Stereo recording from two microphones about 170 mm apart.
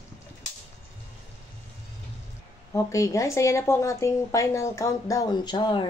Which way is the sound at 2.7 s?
20° left (ahead or behind).